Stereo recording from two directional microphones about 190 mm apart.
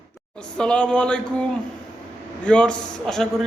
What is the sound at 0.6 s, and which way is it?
Speech, 5° left (ahead or behind).